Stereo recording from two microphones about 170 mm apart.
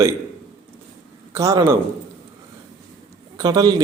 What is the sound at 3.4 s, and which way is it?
Speech, 20° right (ahead or behind).